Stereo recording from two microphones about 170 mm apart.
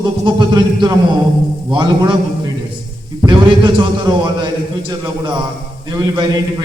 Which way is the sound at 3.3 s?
25° right (ahead or behind).